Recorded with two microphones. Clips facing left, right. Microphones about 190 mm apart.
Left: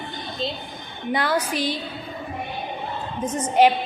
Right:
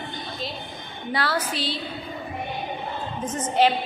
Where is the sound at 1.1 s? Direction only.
20° left (ahead or behind).